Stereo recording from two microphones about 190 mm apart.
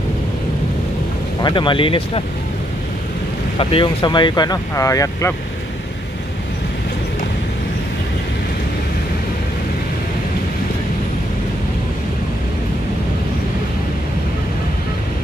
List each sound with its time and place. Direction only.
1.4 s speech: 25° left (ahead or behind)
3.5 s speech: 25° left (ahead or behind)